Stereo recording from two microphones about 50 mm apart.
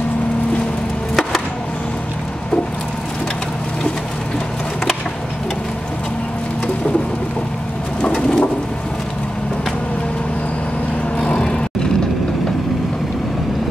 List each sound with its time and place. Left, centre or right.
8.0 s bird: left
11.1 s vehicle: centre